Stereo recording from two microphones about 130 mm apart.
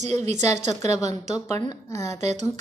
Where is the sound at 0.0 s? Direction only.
60° right (ahead or behind).